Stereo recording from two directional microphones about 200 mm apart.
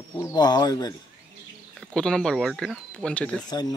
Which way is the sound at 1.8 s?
5° left (ahead or behind).